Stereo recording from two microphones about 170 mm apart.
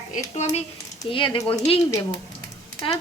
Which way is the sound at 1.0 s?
30° left (ahead or behind).